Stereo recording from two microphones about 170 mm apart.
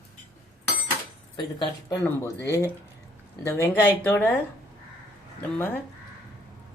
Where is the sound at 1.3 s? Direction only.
30° left (ahead or behind).